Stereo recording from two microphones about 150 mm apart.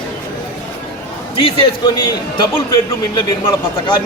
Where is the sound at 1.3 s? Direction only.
35° left (ahead or behind).